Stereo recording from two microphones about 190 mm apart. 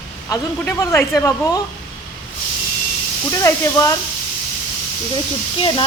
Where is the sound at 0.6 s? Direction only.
15° left (ahead or behind).